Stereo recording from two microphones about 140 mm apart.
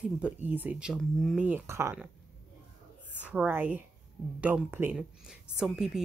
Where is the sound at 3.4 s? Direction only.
15° right (ahead or behind).